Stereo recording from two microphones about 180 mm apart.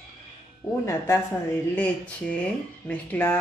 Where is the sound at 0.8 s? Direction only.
15° left (ahead or behind).